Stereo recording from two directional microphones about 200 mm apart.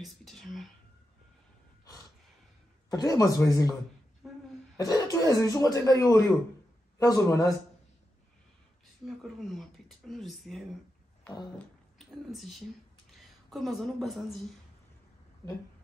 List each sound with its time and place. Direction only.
0.0 s speech: centre (ahead or behind)
2.9 s speech: 15° left (ahead or behind)
4.2 s a sound: centre (ahead or behind)
4.7 s speech: 15° left (ahead or behind)
9.0 s speech: centre (ahead or behind)